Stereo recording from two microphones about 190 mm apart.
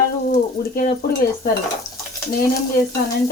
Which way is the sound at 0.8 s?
50° left (ahead or behind).